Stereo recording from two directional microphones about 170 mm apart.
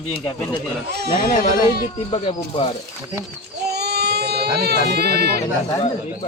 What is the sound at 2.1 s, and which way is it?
Speech, 30° left (ahead or behind).